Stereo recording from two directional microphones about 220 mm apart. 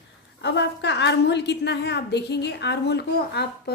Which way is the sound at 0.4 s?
50° left (ahead or behind).